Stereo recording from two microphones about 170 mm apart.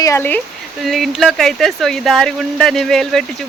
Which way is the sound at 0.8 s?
Centre (ahead or behind).